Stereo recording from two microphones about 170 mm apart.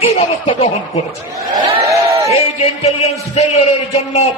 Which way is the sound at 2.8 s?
40° left (ahead or behind).